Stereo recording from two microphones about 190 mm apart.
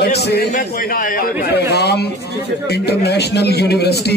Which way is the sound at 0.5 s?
45° left (ahead or behind).